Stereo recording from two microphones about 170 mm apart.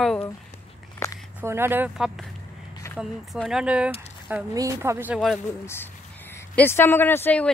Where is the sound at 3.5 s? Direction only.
5° right (ahead or behind).